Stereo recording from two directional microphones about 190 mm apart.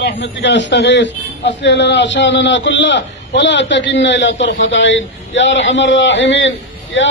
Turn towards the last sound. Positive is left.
turn(degrees=80)